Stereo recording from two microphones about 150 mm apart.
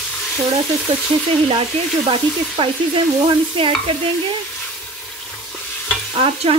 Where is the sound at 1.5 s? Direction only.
35° right (ahead or behind).